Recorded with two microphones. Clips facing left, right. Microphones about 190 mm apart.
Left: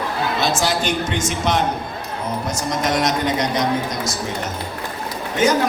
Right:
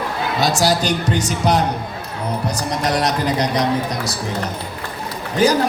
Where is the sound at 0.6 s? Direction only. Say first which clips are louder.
Right 3 dB; 40° right (ahead or behind).